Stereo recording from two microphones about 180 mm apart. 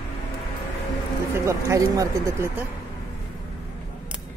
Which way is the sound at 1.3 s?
15° right (ahead or behind).